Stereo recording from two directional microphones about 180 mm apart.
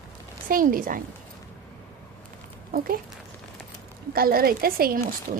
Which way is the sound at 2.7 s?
55° right (ahead or behind).